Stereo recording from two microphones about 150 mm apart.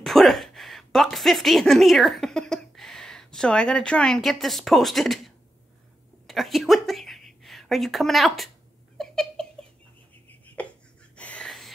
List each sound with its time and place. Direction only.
0.0 s a woman's voice: centre (ahead or behind)
8.9 s cat: centre (ahead or behind)
10.4 s a sound: 10° left (ahead or behind)